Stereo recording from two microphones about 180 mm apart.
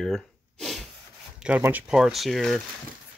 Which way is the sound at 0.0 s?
5° left (ahead or behind).